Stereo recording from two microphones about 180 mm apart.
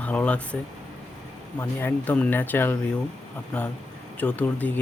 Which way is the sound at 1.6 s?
10° left (ahead or behind).